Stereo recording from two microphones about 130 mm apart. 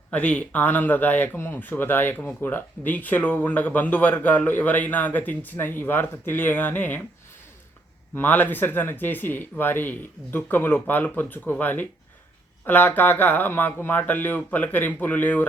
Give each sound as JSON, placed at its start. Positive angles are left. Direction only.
{"t": 0.1, "sound": "speech", "side_deg": 10}
{"t": 8.1, "sound": "speech", "side_deg": 15}